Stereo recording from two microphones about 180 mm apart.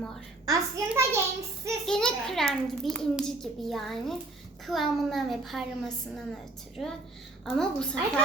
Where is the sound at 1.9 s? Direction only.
5° left (ahead or behind).